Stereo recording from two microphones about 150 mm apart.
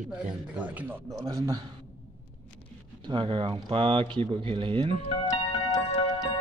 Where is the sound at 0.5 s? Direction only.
10° right (ahead or behind).